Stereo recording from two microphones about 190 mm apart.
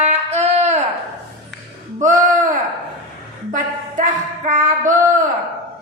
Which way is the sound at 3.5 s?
40° right (ahead or behind).